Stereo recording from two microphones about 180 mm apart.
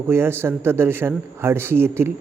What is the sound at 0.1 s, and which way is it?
Speech, 15° right (ahead or behind).